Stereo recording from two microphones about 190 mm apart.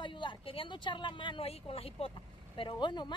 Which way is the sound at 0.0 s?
25° left (ahead or behind).